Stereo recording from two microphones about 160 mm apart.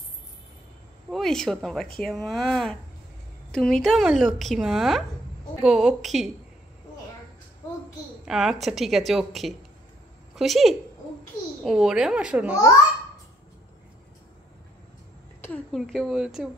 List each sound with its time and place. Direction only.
1.1 s a woman's voice: centre (ahead or behind)
8.3 s a woman's voice: centre (ahead or behind)
15.7 s a woman's voice: centre (ahead or behind)